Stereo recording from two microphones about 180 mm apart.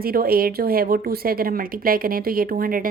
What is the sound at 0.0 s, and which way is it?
A woman's voice, 55° right (ahead or behind).